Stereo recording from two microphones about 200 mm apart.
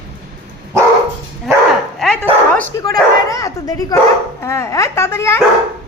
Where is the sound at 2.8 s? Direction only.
15° left (ahead or behind).